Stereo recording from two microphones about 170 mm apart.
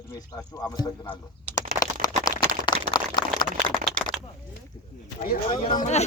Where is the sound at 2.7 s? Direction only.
25° left (ahead or behind).